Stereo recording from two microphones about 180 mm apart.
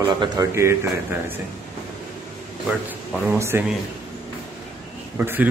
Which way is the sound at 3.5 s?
10° right (ahead or behind).